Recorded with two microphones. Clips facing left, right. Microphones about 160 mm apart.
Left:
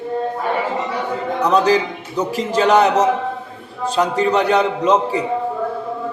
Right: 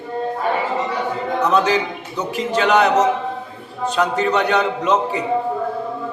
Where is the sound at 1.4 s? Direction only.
35° left (ahead or behind).